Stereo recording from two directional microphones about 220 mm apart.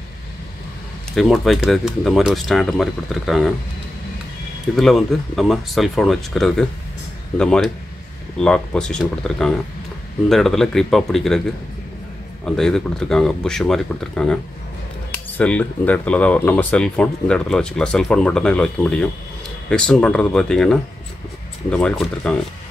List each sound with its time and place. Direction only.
1.1 s speech: centre (ahead or behind)
4.7 s speech: centre (ahead or behind)